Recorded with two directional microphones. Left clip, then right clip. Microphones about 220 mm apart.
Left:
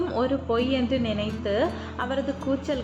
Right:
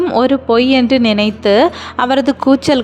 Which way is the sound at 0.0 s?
45° right (ahead or behind).